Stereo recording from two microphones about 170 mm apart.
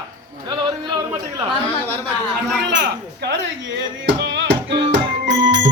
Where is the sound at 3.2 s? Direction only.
90° right.